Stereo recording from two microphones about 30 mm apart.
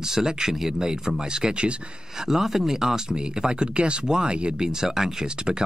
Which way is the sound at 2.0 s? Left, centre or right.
Centre.